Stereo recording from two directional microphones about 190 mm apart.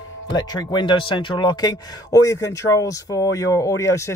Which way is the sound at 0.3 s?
20° left (ahead or behind).